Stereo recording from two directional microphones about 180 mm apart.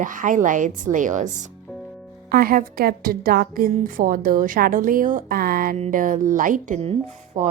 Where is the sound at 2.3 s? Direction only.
55° right (ahead or behind).